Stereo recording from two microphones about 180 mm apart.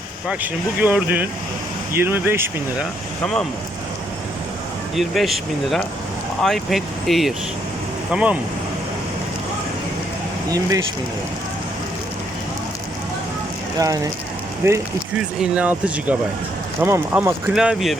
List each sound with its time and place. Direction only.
0.8 s speech: 10° right (ahead or behind)
4.9 s speech: centre (ahead or behind)
13.7 s speech: 20° right (ahead or behind); by 17.9 s centre (ahead or behind)